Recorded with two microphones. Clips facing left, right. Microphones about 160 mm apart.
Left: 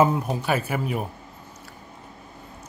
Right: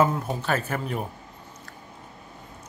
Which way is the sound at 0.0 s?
15° left (ahead or behind).